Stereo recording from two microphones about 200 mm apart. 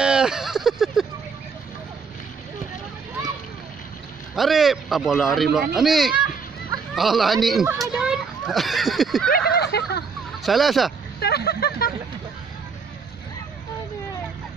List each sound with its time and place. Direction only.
0.0 s a sound: 5° right (ahead or behind)
4.4 s speech: centre (ahead or behind)
9.3 s speech: 50° left (ahead or behind)
10.4 s speech: centre (ahead or behind)
11.1 s vehicle: 55° left (ahead or behind)